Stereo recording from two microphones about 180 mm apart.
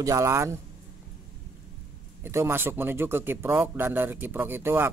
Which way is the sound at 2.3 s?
10° right (ahead or behind).